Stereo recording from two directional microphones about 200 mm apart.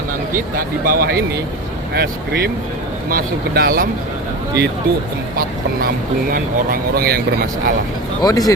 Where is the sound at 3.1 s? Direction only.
50° right (ahead or behind).